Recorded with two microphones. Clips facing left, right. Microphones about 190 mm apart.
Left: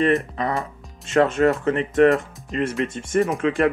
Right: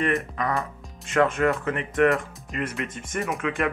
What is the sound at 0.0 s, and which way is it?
Speech, 30° left (ahead or behind).